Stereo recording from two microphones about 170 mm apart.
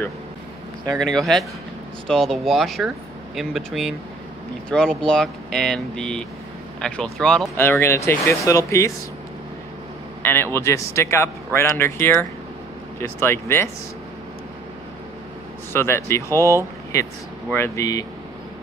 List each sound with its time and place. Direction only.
0.9 s speech: 5° left (ahead or behind)
10.2 s speech: 10° left (ahead or behind)
15.7 s speech: 15° left (ahead or behind)